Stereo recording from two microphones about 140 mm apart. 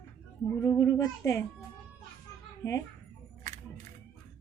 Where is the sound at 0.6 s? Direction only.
20° left (ahead or behind).